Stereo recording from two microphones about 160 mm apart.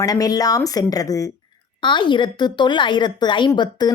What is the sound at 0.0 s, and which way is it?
A woman's voice, 25° left (ahead or behind).